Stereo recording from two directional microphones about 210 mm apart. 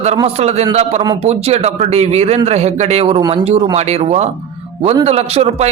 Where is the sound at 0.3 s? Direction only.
30° right (ahead or behind).